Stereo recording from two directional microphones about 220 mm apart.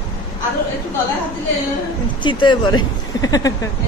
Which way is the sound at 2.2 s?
20° left (ahead or behind).